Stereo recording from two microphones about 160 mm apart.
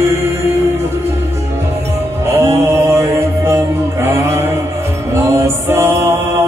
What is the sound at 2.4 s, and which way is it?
Music, 15° right (ahead or behind).